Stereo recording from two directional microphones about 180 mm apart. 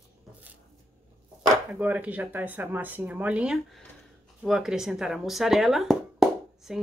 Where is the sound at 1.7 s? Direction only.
10° right (ahead or behind).